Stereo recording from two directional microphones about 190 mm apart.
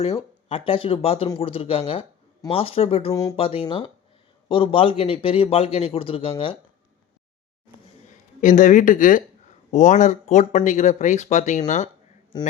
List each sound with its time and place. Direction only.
0.0 s a man's voice: 30° left (ahead or behind)
3.1 s speech: 15° left (ahead or behind)
3.3 s a man's voice: 30° left (ahead or behind)
8.4 s speech: 40° left (ahead or behind)